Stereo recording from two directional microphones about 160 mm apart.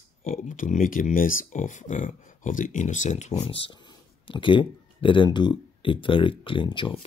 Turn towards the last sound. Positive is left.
turn(degrees=30)  # may be behind; listen again after turning